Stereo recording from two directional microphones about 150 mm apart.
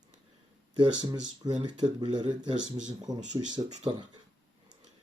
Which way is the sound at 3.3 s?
25° right (ahead or behind).